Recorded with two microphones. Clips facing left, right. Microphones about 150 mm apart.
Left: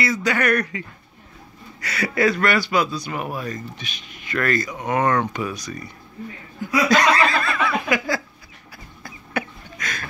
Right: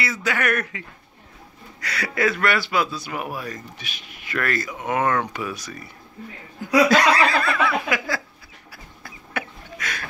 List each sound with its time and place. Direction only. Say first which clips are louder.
0.0 s speech: left 3 dB; 5° right (ahead or behind)
6.9 s speech: even; 5° right (ahead or behind)
9.0 s chicken: left 4 dB; 5° right (ahead or behind)